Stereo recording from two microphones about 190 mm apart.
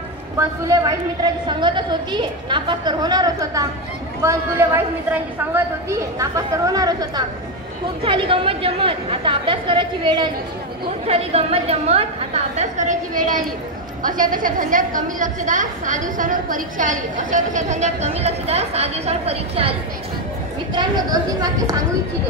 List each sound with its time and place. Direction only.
0.4 s a woman's voice: 20° right (ahead or behind)
20.7 s a woman's voice: 20° right (ahead or behind)